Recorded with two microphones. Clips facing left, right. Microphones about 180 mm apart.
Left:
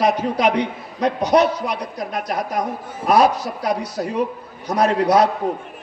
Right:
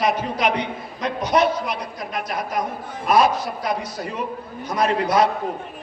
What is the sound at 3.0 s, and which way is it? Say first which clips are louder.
A man's voice: left 2 dB; 40° left (ahead or behind).